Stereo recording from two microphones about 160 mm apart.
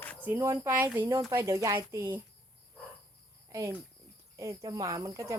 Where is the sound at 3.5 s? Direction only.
20° right (ahead or behind).